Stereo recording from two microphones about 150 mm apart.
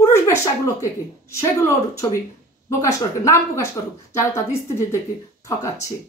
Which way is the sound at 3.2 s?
20° left (ahead or behind).